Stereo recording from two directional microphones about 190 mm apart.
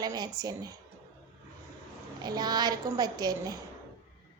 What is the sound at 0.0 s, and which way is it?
Speech, 20° right (ahead or behind).